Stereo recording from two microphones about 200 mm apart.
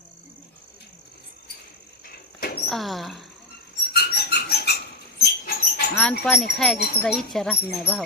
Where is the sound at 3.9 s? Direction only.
50° left (ahead or behind).